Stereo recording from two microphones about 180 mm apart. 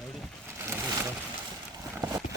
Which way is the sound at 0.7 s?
15° right (ahead or behind).